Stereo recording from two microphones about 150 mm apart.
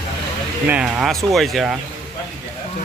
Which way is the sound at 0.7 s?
5° right (ahead or behind).